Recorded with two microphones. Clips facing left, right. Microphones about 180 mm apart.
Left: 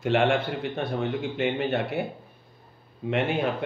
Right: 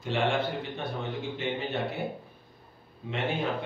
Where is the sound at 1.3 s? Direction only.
70° left (ahead or behind).